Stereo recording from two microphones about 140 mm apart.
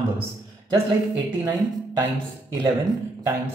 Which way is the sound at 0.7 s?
30° right (ahead or behind).